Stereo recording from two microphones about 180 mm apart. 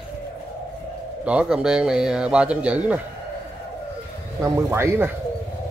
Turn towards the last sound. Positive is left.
turn(degrees=-15)  # may be behind; listen again after turning